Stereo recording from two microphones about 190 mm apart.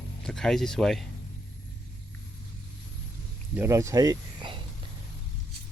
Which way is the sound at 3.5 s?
15° right (ahead or behind).